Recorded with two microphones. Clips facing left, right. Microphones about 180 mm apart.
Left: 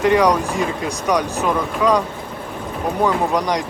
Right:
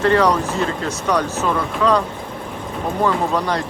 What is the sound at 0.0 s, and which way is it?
Speech, 15° left (ahead or behind).